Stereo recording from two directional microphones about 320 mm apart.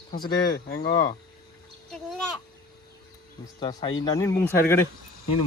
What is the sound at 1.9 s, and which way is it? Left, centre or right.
Speech, centre.